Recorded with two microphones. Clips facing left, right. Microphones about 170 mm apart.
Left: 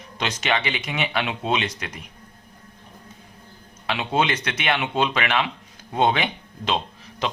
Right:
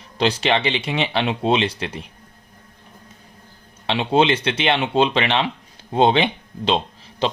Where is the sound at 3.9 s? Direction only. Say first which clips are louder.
Right 6 dB; 30° right (ahead or behind).